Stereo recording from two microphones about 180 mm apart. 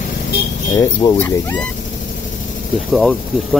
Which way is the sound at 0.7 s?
15° left (ahead or behind).